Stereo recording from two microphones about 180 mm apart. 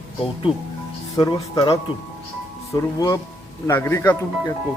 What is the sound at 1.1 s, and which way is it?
Speech, 20° left (ahead or behind).